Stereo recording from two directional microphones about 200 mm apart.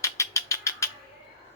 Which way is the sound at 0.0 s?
15° left (ahead or behind).